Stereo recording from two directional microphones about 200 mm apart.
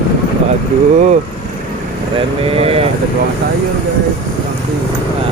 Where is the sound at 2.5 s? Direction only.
30° right (ahead or behind).